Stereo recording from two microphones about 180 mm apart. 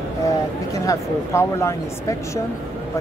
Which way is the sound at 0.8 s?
15° left (ahead or behind).